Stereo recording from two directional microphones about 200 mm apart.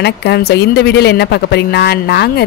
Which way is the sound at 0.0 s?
55° left (ahead or behind).